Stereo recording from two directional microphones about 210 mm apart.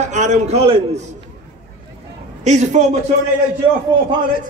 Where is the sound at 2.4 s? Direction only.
35° right (ahead or behind).